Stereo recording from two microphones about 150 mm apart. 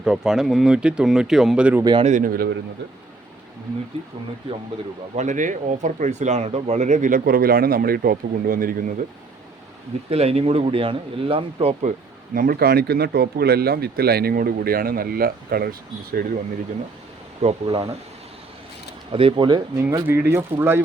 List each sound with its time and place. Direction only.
0.0 s speech: 5° right (ahead or behind)
1.8 s speech: 30° right (ahead or behind)
2.0 s a man's voice: 60° right (ahead or behind)
5.1 s speech: 55° right (ahead or behind); by 9.0 s 70° right (ahead or behind)
10.1 s speech: 40° right (ahead or behind); by 15.7 s 90° right
17.4 s speech: 40° right (ahead or behind)
19.1 s speech: 35° right (ahead or behind)
19.8 s speech: 15° right (ahead or behind)